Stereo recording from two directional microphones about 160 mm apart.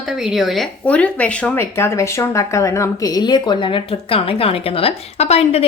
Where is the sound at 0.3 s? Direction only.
Centre (ahead or behind).